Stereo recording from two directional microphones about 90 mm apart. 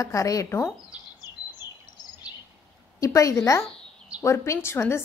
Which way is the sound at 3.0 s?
35° left (ahead or behind).